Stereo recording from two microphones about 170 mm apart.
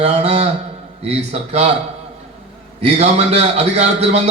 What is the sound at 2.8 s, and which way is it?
A man's voice, 40° right (ahead or behind).